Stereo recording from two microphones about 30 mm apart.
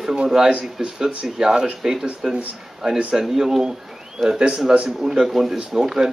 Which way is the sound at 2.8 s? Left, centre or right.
Right.